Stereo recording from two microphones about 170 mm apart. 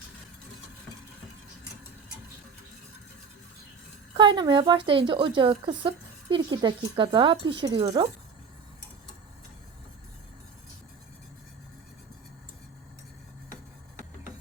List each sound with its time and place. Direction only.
4.2 s a woman's voice: 25° right (ahead or behind)